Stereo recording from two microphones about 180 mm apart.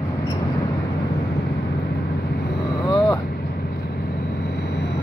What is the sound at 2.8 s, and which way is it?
Vehicle, 25° left (ahead or behind).